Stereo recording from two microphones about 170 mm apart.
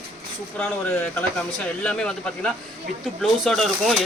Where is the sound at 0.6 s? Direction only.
10° left (ahead or behind).